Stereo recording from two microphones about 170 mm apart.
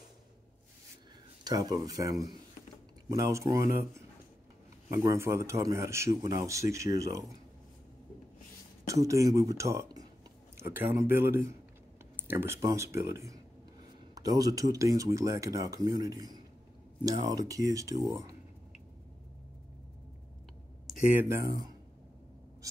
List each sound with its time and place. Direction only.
1.4 s speech: 20° right (ahead or behind)
8.8 s speech: 20° right (ahead or behind)
14.1 s speech: 20° right (ahead or behind)
21.1 s speech: 15° right (ahead or behind)